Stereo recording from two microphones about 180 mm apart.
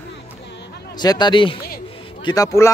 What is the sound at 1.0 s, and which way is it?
Speech, 25° left (ahead or behind).